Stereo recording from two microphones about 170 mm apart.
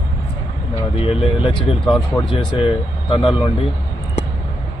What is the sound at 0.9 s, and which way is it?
Speech, 30° left (ahead or behind).